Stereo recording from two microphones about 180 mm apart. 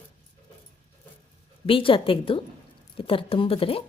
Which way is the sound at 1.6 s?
30° left (ahead or behind).